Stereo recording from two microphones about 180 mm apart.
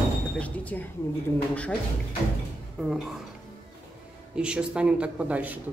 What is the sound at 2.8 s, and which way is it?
Speech, centre (ahead or behind).